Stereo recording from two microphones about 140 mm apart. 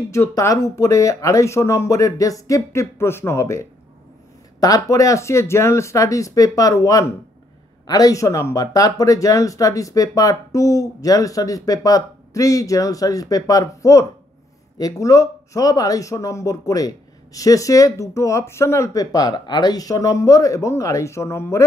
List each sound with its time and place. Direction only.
0.1 s speech: 20° left (ahead or behind)